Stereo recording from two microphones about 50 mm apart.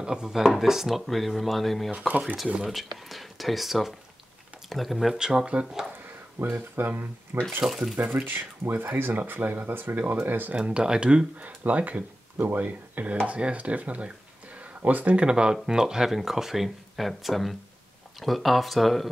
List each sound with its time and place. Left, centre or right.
0.0 s speech: centre
1.9 s speech: right
2.7 s speech: centre
5.2 s speech: centre
6.4 s speech: right
7.6 s speech: centre
8.2 s speech: right
10.5 s speech: right
15.1 s speech: centre